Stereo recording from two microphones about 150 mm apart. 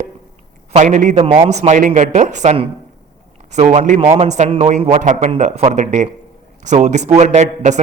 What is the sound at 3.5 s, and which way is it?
Speech, 55° right (ahead or behind).